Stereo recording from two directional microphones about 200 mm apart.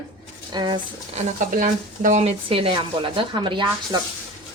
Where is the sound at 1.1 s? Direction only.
40° right (ahead or behind).